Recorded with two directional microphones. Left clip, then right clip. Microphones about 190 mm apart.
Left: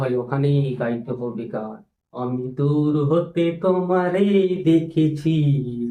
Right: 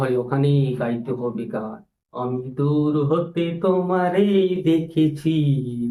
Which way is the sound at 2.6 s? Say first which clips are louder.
Even; 10° right (ahead or behind).